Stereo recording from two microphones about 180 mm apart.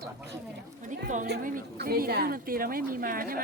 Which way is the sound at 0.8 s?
45° right (ahead or behind).